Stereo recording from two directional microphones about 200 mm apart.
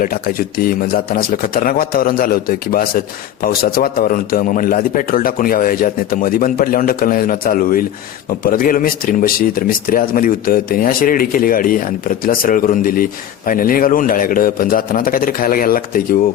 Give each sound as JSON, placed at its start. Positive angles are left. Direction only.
{"t": 0.0, "sound": "speech", "side_deg": 45}